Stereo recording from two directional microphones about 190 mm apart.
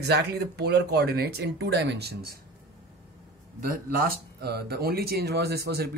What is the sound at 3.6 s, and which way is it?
Speech, 50° right (ahead or behind).